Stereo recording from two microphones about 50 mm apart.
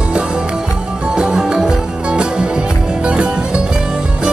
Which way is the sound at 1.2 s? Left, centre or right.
Centre.